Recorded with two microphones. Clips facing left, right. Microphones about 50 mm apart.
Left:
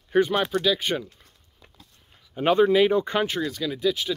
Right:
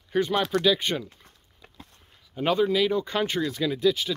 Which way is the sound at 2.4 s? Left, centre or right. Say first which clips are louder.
Left 4 dB; centre.